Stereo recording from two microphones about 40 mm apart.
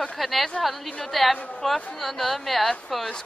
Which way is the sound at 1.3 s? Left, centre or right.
Left.